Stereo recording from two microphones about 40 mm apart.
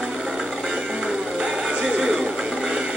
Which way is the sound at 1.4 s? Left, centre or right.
Centre.